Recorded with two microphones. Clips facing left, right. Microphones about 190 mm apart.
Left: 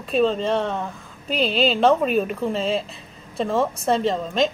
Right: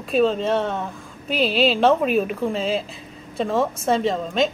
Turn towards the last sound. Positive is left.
turn(degrees=0)  # may be behind; listen again after turning